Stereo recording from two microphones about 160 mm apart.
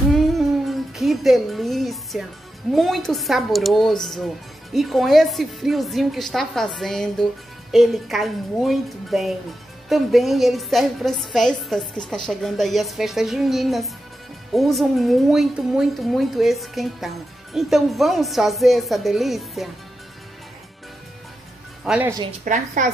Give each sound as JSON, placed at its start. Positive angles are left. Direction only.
{"t": 0.1, "sound": "music", "side_deg": 0}
{"t": 2.7, "sound": "a woman's voice", "side_deg": 0}
{"t": 21.8, "sound": "speech", "side_deg": -5}
{"t": 22.4, "sound": "a woman's voice", "side_deg": -55}